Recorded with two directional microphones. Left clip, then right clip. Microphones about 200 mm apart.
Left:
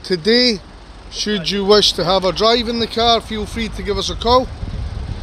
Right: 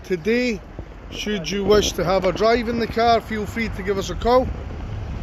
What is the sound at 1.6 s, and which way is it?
Speech, 25° left (ahead or behind).